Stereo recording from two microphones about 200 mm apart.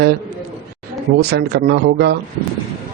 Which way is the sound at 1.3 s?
55° right (ahead or behind).